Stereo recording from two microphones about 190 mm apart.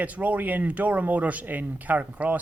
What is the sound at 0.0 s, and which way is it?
Speech, 10° right (ahead or behind).